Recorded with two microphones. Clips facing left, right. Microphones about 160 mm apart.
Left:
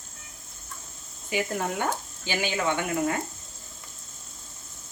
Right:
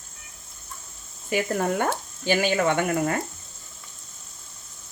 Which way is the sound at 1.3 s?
50° right (ahead or behind).